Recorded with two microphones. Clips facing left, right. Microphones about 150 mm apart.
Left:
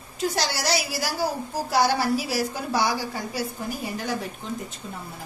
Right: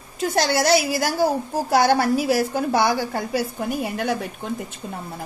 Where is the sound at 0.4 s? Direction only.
55° right (ahead or behind).